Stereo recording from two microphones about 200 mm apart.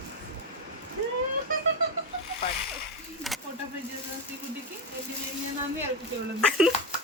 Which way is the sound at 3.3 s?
Centre (ahead or behind).